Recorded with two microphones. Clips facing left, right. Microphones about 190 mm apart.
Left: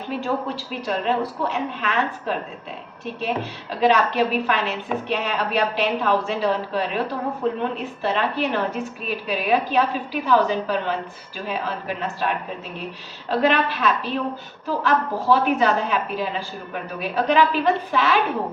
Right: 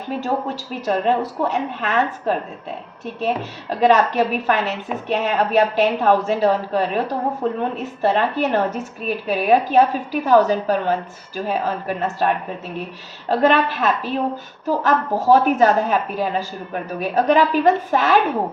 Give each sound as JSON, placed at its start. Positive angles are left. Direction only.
{"t": 0.1, "sound": "a woman's voice", "side_deg": -45}
{"t": 3.8, "sound": "a woman's voice", "side_deg": -45}